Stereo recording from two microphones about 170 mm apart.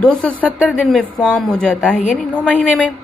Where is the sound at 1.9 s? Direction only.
45° left (ahead or behind).